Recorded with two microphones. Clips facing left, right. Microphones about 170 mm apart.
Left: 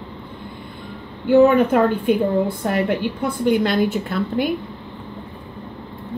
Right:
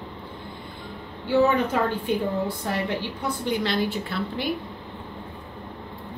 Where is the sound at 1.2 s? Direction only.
55° left (ahead or behind).